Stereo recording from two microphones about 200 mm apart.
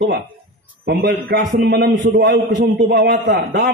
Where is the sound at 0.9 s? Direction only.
55° right (ahead or behind).